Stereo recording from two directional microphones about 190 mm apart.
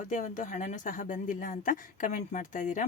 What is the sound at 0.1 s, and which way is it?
A woman's voice, 40° left (ahead or behind).